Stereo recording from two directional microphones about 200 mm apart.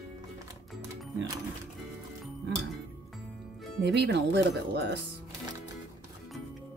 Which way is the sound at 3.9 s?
60° right (ahead or behind).